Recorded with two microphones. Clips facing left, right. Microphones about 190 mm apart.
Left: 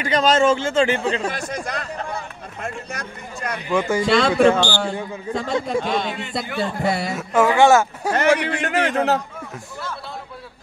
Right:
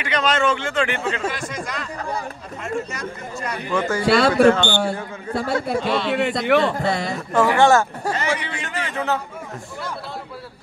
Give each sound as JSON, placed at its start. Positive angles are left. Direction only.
{"t": 0.0, "sound": "a man's voice", "side_deg": 35}
{"t": 1.3, "sound": "speech", "side_deg": 50}
{"t": 3.7, "sound": "speech", "side_deg": 10}
{"t": 4.1, "sound": "a man's voice", "side_deg": -5}
{"t": 5.8, "sound": "speech", "side_deg": 45}
{"t": 6.0, "sound": "a man's voice", "side_deg": -65}
{"t": 6.8, "sound": "speech", "side_deg": 10}
{"t": 8.1, "sound": "a man's voice", "side_deg": 60}